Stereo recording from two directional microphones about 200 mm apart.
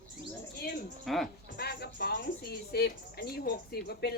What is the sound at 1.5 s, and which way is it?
Speech, 50° left (ahead or behind).